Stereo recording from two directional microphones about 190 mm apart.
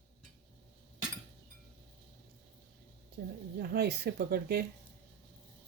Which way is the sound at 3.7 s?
55° right (ahead or behind).